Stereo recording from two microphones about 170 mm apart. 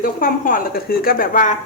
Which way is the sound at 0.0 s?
55° left (ahead or behind).